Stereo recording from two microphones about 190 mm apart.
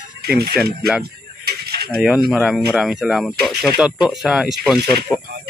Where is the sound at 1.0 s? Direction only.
55° right (ahead or behind).